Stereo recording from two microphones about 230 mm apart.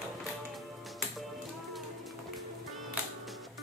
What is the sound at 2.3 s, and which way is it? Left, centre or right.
Music, centre.